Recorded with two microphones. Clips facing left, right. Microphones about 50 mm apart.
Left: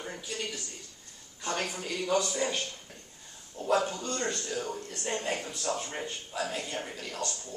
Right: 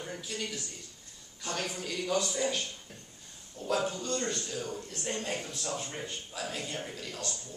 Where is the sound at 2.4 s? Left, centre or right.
Left.